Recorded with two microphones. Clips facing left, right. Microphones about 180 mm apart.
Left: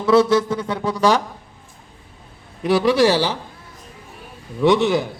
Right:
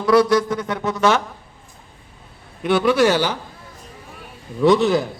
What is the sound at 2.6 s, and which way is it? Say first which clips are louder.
Speech: left 1 dB; 30° left (ahead or behind).